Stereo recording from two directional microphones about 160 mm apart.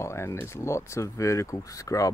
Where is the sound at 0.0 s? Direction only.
15° left (ahead or behind).